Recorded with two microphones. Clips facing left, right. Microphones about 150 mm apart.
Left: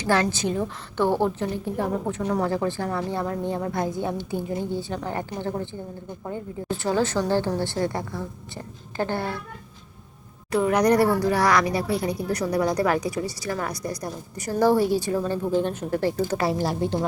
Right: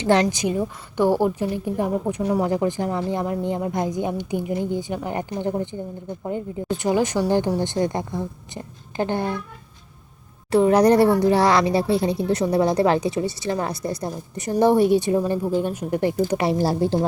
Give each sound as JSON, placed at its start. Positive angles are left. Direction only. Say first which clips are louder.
{"t": 0.0, "sound": "a woman's voice", "louder": "right 4 dB", "side_deg": -20}
{"t": 10.5, "sound": "speech", "louder": "right 4 dB", "side_deg": -30}
{"t": 16.4, "sound": "a woman's voice", "louder": "right 4 dB", "side_deg": -30}